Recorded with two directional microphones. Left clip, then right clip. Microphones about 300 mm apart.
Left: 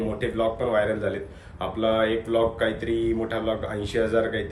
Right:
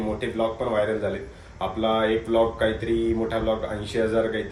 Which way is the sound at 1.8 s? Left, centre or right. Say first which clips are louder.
Even; centre.